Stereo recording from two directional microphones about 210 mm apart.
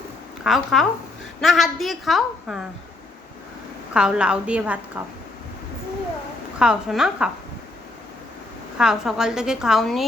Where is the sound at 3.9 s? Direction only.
5° right (ahead or behind).